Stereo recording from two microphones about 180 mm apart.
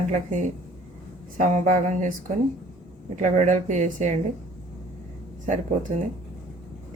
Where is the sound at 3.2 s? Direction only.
40° right (ahead or behind).